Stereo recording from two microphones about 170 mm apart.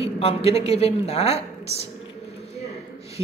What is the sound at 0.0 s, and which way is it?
A woman's voice, 35° left (ahead or behind).